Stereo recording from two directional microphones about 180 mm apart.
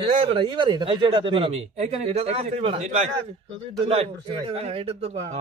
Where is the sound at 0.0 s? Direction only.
30° right (ahead or behind).